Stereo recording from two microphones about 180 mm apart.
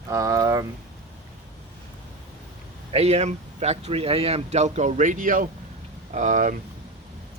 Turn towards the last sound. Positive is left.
turn(degrees=-45)  # may be behind; listen again after turning